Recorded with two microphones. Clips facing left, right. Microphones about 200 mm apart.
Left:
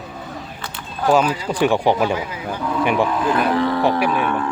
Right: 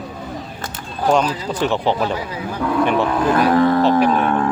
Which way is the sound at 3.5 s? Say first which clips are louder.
Right 5 dB; 45° right (ahead or behind).